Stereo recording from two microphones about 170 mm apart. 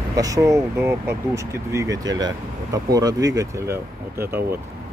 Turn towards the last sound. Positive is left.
turn(degrees=-15)  # may be behind; listen again after turning